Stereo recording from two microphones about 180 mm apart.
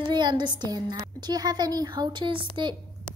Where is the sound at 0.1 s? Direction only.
25° right (ahead or behind).